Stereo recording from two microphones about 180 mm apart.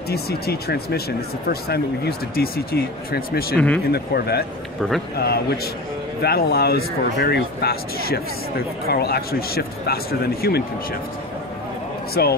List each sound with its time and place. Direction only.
0.1 s speech: 60° left (ahead or behind)
3.5 s speech: 5° left (ahead or behind)
3.9 s speech: 60° left (ahead or behind)
12.1 s speech: 60° left (ahead or behind)